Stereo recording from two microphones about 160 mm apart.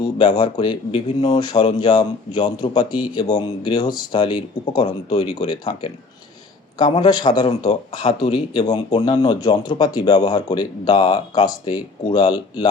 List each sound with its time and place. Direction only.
0.0 s a man's voice: 30° left (ahead or behind)